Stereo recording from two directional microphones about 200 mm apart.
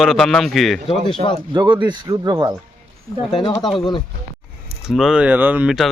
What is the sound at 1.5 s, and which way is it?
A man's voice, 25° right (ahead or behind).